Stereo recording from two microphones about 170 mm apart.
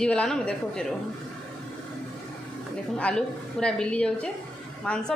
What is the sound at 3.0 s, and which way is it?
A woman's voice, 5° left (ahead or behind).